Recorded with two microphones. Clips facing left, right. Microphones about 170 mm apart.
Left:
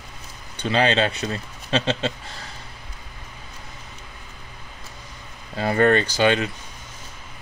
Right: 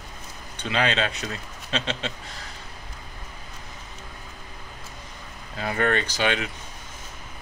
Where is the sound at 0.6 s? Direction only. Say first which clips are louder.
Left 5 dB; 30° left (ahead or behind).